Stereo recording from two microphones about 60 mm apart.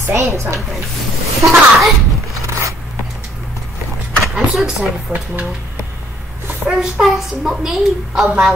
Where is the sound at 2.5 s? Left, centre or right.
Right.